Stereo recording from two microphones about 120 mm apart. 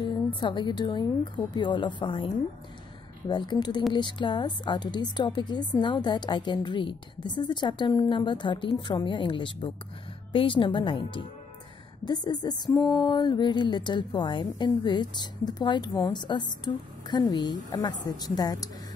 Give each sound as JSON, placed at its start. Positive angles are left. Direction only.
{"t": 0.0, "sound": "a woman's voice", "side_deg": 40}